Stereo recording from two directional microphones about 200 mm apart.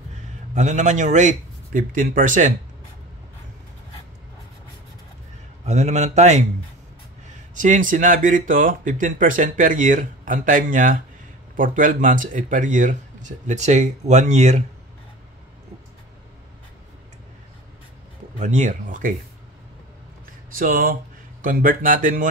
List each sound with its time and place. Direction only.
0.6 s speech: 35° right (ahead or behind)
5.7 s speech: 35° right (ahead or behind)
7.5 s speech: 40° right (ahead or behind)
18.4 s speech: 35° right (ahead or behind)
20.5 s speech: 45° right (ahead or behind)